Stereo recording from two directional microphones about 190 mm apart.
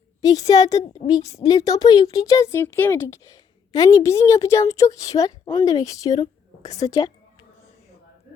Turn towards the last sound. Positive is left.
turn(degrees=15)  # may be behind; listen again after turning